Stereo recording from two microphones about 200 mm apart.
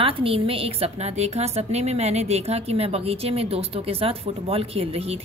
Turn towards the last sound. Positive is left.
turn(degrees=-30)  # may be behind; listen again after turning